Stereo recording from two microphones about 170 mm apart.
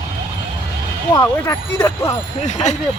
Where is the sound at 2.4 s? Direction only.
45° left (ahead or behind).